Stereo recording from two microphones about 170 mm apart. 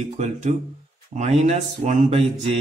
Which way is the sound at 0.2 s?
45° right (ahead or behind).